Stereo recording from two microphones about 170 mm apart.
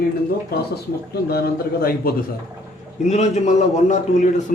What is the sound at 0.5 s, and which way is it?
A man's voice, 65° left (ahead or behind).